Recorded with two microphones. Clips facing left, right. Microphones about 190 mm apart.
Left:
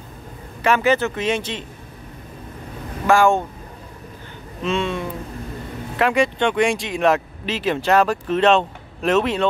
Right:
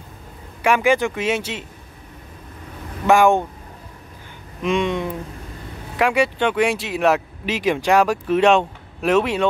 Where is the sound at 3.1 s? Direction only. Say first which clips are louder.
Right 1 dB; 15° right (ahead or behind).